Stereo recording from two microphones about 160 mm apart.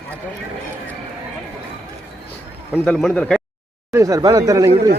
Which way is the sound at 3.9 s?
20° right (ahead or behind).